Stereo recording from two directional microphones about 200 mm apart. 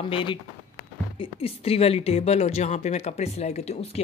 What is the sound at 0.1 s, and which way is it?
Speech, 25° left (ahead or behind).